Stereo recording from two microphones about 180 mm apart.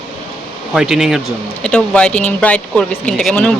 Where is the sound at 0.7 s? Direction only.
5° right (ahead or behind).